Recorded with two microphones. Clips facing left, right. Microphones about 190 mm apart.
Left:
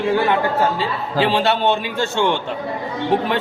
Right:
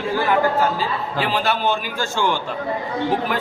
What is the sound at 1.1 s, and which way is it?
A man's voice, 30° left (ahead or behind).